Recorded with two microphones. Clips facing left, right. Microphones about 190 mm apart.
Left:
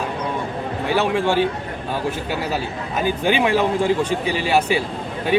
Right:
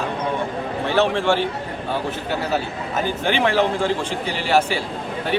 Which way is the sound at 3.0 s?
15° left (ahead or behind).